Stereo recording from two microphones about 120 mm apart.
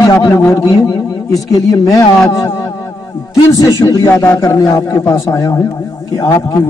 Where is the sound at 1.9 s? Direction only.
25° left (ahead or behind).